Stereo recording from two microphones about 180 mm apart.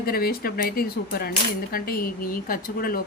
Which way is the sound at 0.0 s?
55° left (ahead or behind).